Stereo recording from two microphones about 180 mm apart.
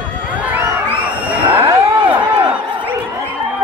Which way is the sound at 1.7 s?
10° right (ahead or behind).